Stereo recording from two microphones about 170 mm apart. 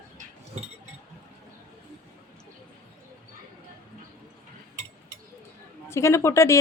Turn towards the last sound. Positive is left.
turn(degrees=15)  # may be behind; listen again after turning